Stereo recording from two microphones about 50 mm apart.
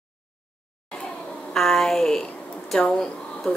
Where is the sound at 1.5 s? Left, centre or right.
Centre.